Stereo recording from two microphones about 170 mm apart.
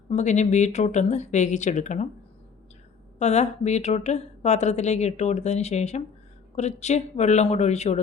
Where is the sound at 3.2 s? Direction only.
40° left (ahead or behind).